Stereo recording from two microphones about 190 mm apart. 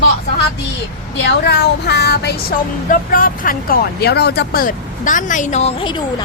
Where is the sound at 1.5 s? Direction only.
60° left (ahead or behind).